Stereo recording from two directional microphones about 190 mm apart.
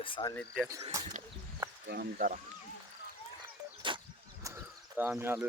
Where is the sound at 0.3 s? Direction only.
Centre (ahead or behind).